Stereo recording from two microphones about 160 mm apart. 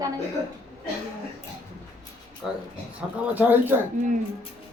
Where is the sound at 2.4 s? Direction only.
5° right (ahead or behind).